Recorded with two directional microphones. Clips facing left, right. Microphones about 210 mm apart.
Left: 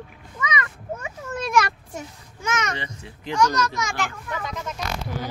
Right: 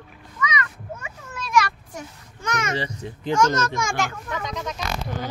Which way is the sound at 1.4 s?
50° left (ahead or behind).